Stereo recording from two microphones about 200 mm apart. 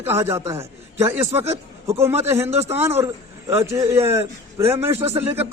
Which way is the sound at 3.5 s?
15° right (ahead or behind).